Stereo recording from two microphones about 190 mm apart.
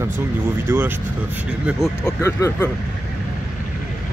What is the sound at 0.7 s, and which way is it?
Speech, 10° right (ahead or behind).